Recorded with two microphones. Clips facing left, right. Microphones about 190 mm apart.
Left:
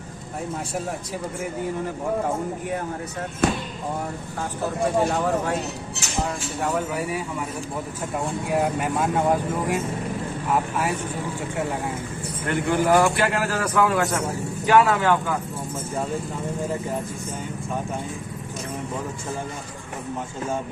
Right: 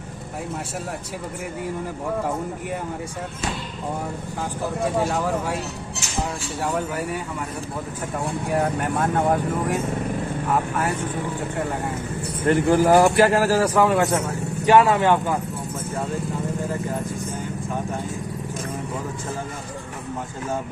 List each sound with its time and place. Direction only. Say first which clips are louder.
3.4 s speech: left 8 dB; 60° left (ahead or behind)
5.1 s speech: left 1 dB; 5° right (ahead or behind)
6.6 s speech: even; centre (ahead or behind)
8.5 s speech: even; 5° left (ahead or behind)
12.5 s a man's voice: right 4 dB; 40° right (ahead or behind)